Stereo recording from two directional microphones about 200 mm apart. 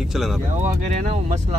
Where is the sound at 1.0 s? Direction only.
35° right (ahead or behind).